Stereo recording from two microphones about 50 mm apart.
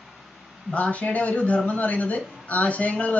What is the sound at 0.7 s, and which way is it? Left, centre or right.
Speech, left.